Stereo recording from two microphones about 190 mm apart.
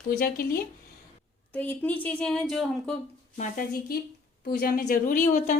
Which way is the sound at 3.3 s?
40° left (ahead or behind).